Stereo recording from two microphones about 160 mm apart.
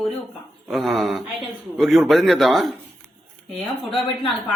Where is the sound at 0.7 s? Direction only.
Centre (ahead or behind).